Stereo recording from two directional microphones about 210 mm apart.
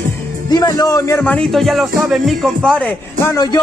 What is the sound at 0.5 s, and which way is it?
Speech, 20° left (ahead or behind).